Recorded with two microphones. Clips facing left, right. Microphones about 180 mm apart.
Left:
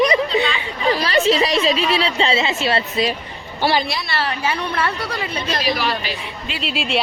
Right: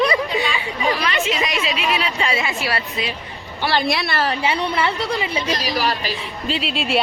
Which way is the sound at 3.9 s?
55° right (ahead or behind).